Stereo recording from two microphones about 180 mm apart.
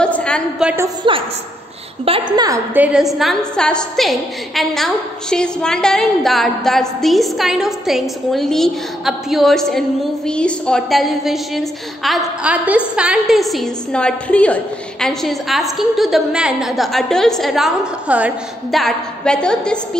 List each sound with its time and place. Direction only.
0.0 s a sound: 5° left (ahead or behind)
0.7 s a woman's voice: 15° right (ahead or behind)
2.0 s a woman's voice: 30° right (ahead or behind)
2.7 s a woman's voice: 5° right (ahead or behind)